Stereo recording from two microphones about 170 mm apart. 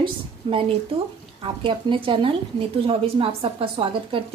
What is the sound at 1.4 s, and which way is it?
Speech, 30° right (ahead or behind).